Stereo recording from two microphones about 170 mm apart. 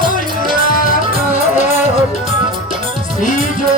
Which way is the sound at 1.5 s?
45° left (ahead or behind).